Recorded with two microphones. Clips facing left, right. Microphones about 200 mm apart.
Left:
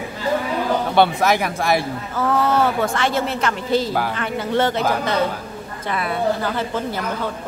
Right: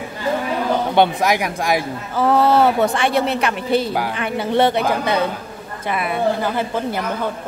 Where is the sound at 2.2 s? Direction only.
30° right (ahead or behind).